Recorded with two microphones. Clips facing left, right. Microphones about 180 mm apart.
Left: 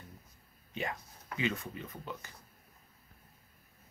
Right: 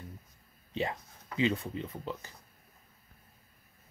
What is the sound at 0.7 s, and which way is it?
Speech, 30° right (ahead or behind).